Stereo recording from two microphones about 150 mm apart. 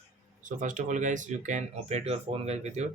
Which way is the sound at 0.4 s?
60° right (ahead or behind).